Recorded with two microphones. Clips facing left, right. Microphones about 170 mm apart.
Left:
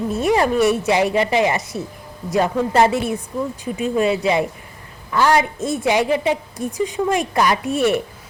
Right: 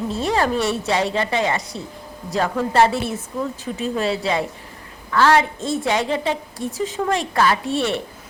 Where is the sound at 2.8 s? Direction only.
15° left (ahead or behind).